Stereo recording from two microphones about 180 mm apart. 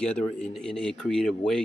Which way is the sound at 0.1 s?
5° left (ahead or behind).